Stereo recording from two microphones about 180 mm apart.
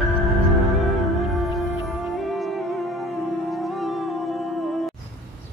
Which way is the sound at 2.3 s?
Centre (ahead or behind).